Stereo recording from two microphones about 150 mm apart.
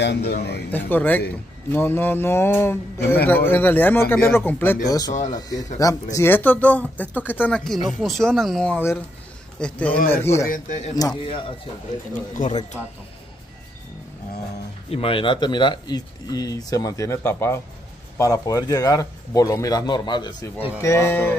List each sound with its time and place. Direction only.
0.3 s speech: 90° left
0.7 s speech: 10° left (ahead or behind)
4.8 s speech: 25° left (ahead or behind)
5.1 s speech: 50° left (ahead or behind)
5.8 s speech: 25° left (ahead or behind)
10.5 s speech: 55° left (ahead or behind)
11.2 s speech: 35° left (ahead or behind)
12.4 s speech: 65° left (ahead or behind)
14.9 s speech: 40° left (ahead or behind)
20.8 s speech: 20° left (ahead or behind)